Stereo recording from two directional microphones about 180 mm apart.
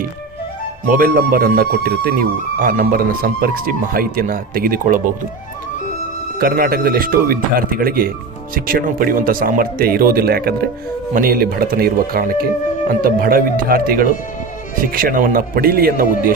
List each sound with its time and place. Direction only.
0.9 s speech: 55° right (ahead or behind)
6.4 s speech: 55° right (ahead or behind)